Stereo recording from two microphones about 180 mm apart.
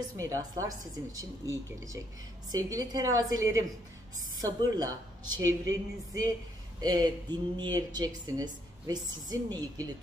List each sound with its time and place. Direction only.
0.2 s speech: 20° right (ahead or behind)